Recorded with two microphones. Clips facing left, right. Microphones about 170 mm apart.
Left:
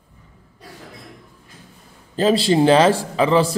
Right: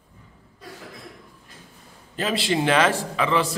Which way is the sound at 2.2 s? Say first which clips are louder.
Left 8 dB; 35° left (ahead or behind).